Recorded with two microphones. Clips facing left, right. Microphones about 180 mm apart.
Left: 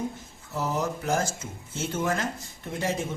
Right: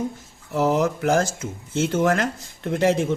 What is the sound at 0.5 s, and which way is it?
Speech, 90° right.